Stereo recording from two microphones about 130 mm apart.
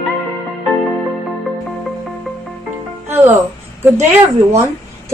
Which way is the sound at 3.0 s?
15° right (ahead or behind).